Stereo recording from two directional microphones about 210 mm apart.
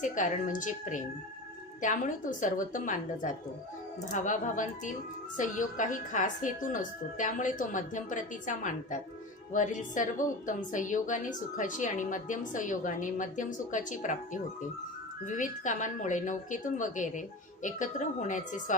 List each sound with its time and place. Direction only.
0.0 s a woman's voice: 35° left (ahead or behind)
15.2 s a woman's voice: 35° left (ahead or behind)